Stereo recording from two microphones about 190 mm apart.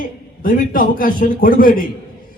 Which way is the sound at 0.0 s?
45° left (ahead or behind).